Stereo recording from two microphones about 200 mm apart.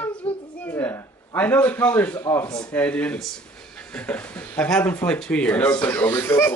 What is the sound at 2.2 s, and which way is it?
Speech, 20° left (ahead or behind).